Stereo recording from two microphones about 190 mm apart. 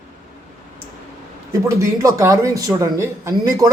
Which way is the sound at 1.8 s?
15° right (ahead or behind).